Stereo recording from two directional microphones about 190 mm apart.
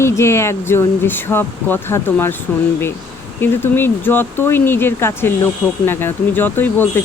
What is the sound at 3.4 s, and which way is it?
Speech, 10° left (ahead or behind).